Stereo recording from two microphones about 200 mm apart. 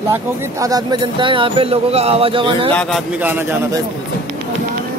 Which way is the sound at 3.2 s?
10° right (ahead or behind).